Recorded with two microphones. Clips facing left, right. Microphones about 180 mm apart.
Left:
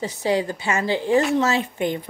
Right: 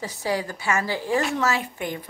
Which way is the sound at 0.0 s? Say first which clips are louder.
Left 5 dB; 20° left (ahead or behind).